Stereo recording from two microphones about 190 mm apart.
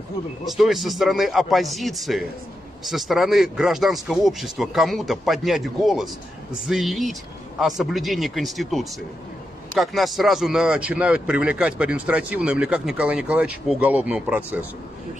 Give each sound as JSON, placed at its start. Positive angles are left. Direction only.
{"t": 0.5, "sound": "a man's voice", "side_deg": 0}